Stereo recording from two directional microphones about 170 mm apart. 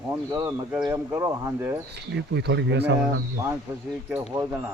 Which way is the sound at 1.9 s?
85° right.